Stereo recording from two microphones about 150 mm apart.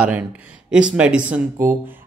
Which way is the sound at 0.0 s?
10° right (ahead or behind).